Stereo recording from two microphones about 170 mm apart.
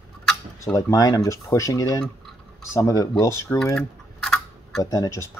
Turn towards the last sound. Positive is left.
turn(degrees=20)  # may be behind; listen again after turning